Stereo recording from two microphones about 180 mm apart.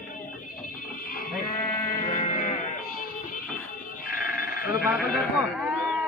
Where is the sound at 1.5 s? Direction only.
50° left (ahead or behind).